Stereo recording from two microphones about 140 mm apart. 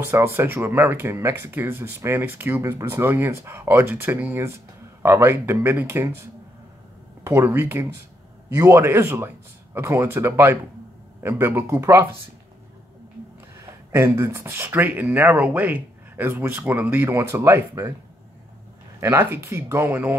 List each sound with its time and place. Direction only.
0.1 s speech: 15° right (ahead or behind)
7.2 s speech: 15° right (ahead or behind)
13.9 s speech: 15° right (ahead or behind)
18.9 s speech: 20° right (ahead or behind)